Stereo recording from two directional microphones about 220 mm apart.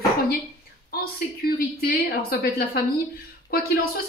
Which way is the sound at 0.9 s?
40° left (ahead or behind).